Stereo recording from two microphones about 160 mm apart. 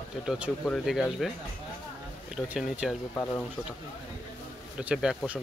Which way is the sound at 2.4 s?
10° right (ahead or behind).